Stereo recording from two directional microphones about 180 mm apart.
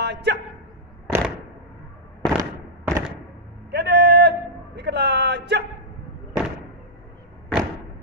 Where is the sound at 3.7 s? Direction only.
70° right (ahead or behind).